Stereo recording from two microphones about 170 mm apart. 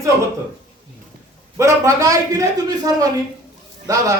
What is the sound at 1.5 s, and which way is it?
A man's voice, 15° right (ahead or behind).